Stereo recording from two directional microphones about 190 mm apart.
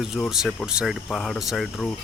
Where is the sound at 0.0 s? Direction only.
Centre (ahead or behind).